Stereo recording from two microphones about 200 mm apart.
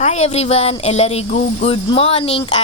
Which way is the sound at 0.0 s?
35° left (ahead or behind).